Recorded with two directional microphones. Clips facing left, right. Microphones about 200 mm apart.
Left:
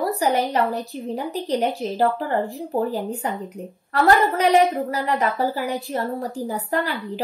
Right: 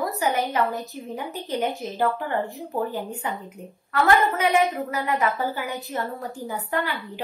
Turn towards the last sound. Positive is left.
turn(degrees=35)  # may be behind; listen again after turning